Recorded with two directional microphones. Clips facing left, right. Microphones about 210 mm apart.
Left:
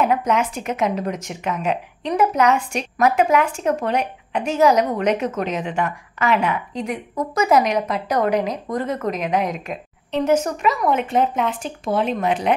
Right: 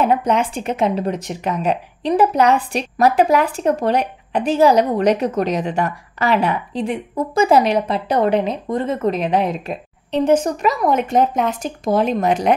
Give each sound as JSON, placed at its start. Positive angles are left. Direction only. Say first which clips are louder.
{"t": 0.0, "sound": "a woman's voice", "louder": "right 2 dB", "side_deg": -30}